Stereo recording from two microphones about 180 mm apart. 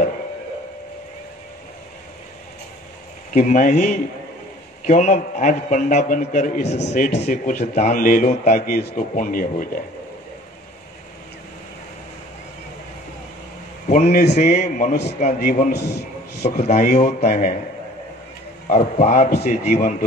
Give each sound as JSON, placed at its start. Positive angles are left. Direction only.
{"t": 3.3, "sound": "a man's voice", "side_deg": 40}
{"t": 13.8, "sound": "a man's voice", "side_deg": 40}
{"t": 16.6, "sound": "a man's voice", "side_deg": 40}
{"t": 18.7, "sound": "a man's voice", "side_deg": 45}